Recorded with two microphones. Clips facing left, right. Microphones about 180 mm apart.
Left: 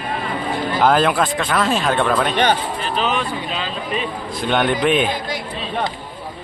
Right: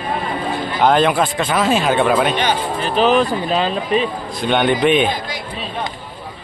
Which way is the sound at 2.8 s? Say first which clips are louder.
Right 7 dB; 40° right (ahead or behind).